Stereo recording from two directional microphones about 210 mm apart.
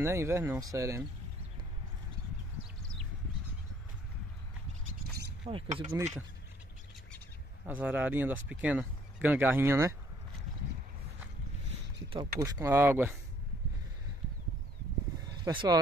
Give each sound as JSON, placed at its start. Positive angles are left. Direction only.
{"t": 0.0, "sound": "speech", "side_deg": -15}
{"t": 5.5, "sound": "speech", "side_deg": -25}
{"t": 7.6, "sound": "speech", "side_deg": -10}
{"t": 12.1, "sound": "speech", "side_deg": -20}
{"t": 15.2, "sound": "speech", "side_deg": -20}